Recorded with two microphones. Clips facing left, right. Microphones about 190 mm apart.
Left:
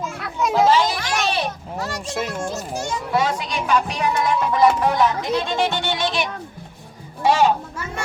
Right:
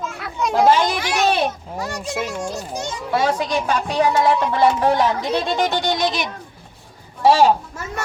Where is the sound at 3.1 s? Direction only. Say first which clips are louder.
Right 3 dB; 35° right (ahead or behind).